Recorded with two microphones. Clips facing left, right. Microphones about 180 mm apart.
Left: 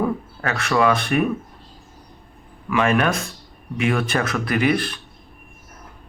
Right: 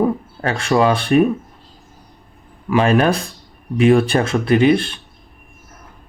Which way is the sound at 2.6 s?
30° right (ahead or behind).